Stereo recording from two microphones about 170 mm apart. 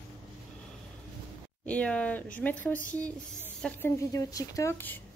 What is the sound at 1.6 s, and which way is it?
Speech, 10° left (ahead or behind).